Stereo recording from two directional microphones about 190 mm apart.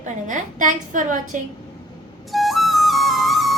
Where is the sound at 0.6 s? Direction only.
45° right (ahead or behind).